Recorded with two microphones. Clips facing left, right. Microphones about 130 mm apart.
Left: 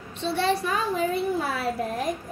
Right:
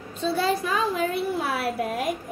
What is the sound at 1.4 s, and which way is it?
Speech, 5° right (ahead or behind).